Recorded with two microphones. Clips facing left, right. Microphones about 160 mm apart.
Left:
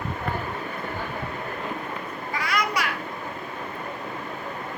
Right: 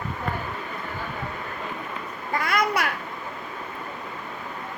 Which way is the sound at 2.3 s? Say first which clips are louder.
Right 3 dB; 55° right (ahead or behind).